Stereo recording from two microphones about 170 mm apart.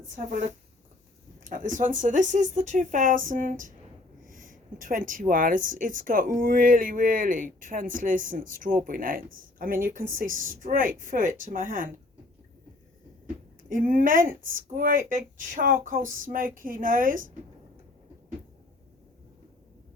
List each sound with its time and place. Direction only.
1.5 s speech: 50° right (ahead or behind)
13.7 s speech: 55° right (ahead or behind)